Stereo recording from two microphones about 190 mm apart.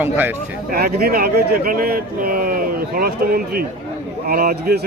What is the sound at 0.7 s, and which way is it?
Speech, 55° right (ahead or behind).